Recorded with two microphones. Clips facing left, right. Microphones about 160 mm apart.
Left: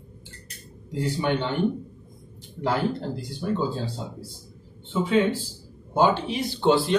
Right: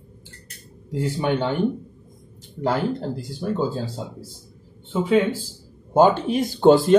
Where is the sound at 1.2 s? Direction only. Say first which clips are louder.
Right 3 dB; 45° right (ahead or behind).